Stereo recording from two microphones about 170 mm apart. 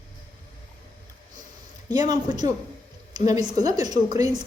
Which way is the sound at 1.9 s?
25° right (ahead or behind).